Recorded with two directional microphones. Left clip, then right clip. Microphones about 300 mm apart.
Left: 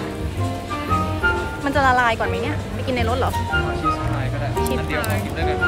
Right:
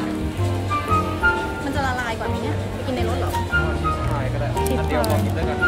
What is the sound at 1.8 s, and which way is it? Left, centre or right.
A woman's voice, centre.